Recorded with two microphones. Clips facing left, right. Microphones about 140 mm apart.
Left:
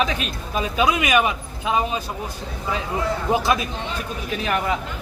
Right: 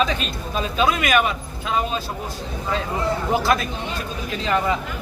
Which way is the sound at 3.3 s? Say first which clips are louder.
Even; 15° left (ahead or behind).